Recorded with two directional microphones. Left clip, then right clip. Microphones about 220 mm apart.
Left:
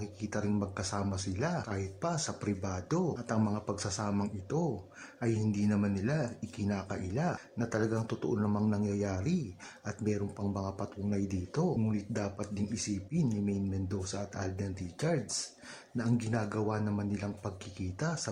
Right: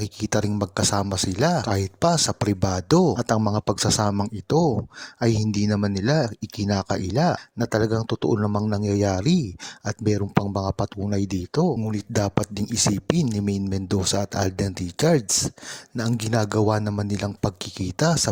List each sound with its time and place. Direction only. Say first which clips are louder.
0.0 s speech: right 12 dB; 40° right (ahead or behind)